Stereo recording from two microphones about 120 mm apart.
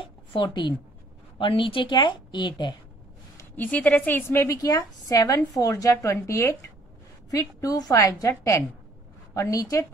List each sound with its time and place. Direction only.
0.3 s a woman's voice: 40° left (ahead or behind)
3.5 s a woman's voice: 10° left (ahead or behind)
4.4 s a woman's voice: 30° left (ahead or behind)